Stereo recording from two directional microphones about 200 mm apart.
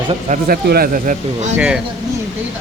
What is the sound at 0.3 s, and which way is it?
Speech, 45° right (ahead or behind).